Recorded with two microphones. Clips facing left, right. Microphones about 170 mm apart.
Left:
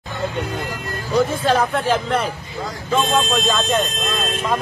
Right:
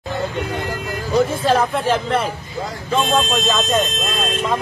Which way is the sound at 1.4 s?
Centre (ahead or behind).